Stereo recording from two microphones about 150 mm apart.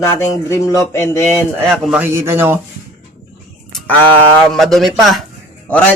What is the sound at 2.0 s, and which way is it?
Speech, 15° right (ahead or behind).